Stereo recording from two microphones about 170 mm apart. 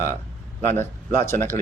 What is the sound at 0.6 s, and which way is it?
Speech, 45° right (ahead or behind).